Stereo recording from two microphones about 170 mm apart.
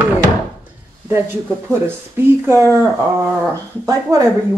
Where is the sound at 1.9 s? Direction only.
15° right (ahead or behind).